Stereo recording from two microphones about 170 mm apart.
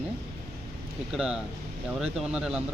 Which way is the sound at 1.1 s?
5° right (ahead or behind).